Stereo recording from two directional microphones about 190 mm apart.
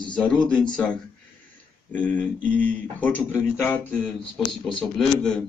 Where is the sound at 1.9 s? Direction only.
10° left (ahead or behind).